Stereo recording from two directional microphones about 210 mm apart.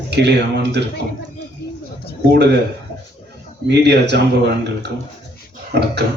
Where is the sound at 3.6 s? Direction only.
55° right (ahead or behind).